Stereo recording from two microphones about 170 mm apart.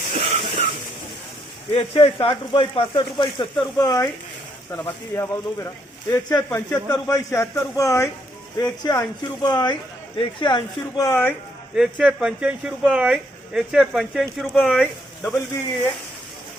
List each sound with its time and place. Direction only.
0.1 s a sound: 35° right (ahead or behind)
1.7 s speech: 35° left (ahead or behind); by 11.3 s 10° left (ahead or behind)
11.7 s speech: 5° right (ahead or behind)